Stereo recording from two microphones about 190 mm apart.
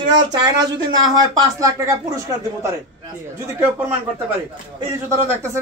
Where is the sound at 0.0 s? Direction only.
20° right (ahead or behind).